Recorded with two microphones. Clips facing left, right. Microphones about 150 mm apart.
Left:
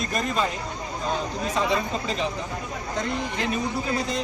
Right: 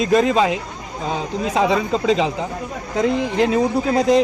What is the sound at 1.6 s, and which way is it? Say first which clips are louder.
Speech: right 7 dB; 90° right.